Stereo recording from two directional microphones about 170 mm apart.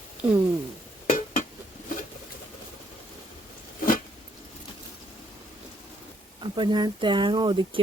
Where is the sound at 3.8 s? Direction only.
55° left (ahead or behind).